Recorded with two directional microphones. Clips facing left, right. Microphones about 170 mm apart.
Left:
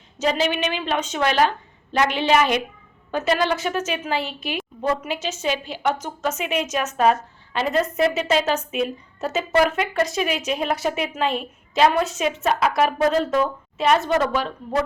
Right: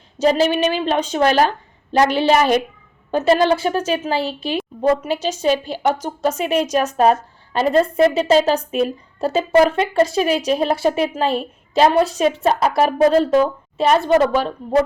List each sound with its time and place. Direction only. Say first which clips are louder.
0.2 s a woman's voice: right 6 dB; 35° right (ahead or behind)